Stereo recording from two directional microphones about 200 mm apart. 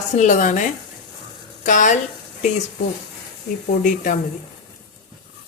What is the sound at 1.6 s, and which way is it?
Speech, 40° left (ahead or behind).